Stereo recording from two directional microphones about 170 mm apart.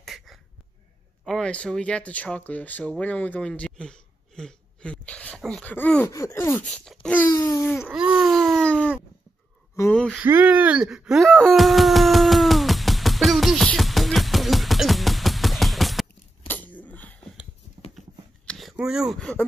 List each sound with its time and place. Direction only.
0.0 s a sound: centre (ahead or behind)
1.2 s speech: 5° left (ahead or behind)
6.6 s wail: centre (ahead or behind)
7.2 s speech: 20° left (ahead or behind)
7.8 s baby cry: 5° right (ahead or behind)
9.8 s speech: 5° left (ahead or behind)
10.1 s wail: 10° right (ahead or behind)
16.4 s wheeze: 10° left (ahead or behind)
17.9 s a sound: 5° left (ahead or behind)